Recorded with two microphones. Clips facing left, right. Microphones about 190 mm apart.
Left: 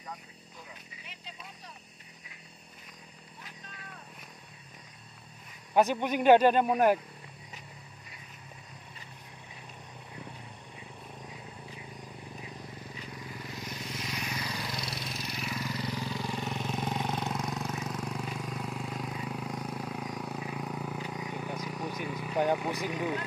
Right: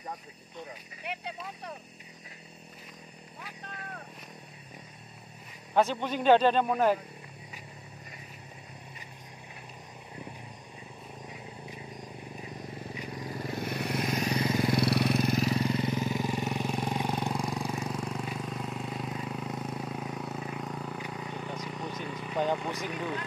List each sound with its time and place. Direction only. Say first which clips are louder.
1.0 s a sound: right 13 dB; 65° right (ahead or behind)
5.8 s speech: left 1 dB; 15° left (ahead or behind)
13.2 s vehicle: right 9 dB; 40° right (ahead or behind)
14.2 s vehicle: right 10 dB; 45° right (ahead or behind)
15.4 s vehicle: right 8 dB; 30° right (ahead or behind); by 23.2 s 10° left (ahead or behind)